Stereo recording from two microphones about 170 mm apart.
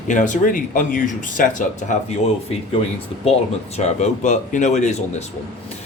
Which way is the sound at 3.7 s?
40° left (ahead or behind).